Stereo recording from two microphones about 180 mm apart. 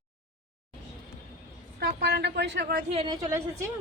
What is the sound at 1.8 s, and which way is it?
Speech, 60° right (ahead or behind).